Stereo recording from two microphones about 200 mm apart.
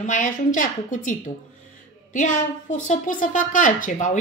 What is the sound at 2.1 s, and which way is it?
Speech, 40° left (ahead or behind).